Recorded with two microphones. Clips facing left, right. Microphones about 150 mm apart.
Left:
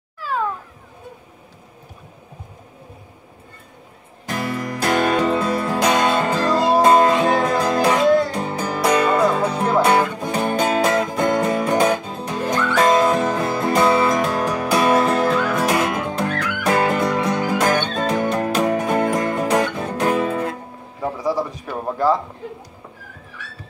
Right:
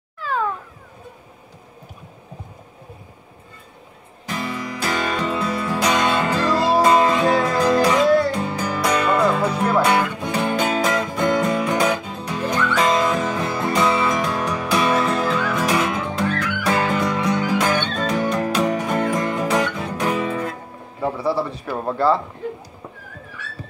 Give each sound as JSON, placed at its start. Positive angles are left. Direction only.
{"t": 4.3, "sound": "music", "side_deg": 55}
{"t": 8.7, "sound": "music", "side_deg": 40}
{"t": 21.2, "sound": "a sound", "side_deg": 15}